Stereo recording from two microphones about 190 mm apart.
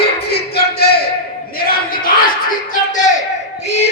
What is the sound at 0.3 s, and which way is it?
Music, 55° left (ahead or behind).